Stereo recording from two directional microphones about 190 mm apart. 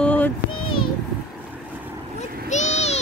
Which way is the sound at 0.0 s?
5° left (ahead or behind).